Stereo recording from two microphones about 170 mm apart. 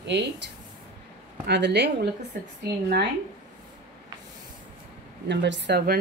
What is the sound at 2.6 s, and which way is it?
Speech, 70° right (ahead or behind).